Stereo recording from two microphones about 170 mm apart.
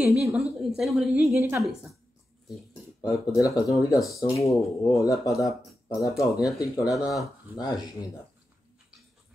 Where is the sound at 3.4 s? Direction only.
20° left (ahead or behind).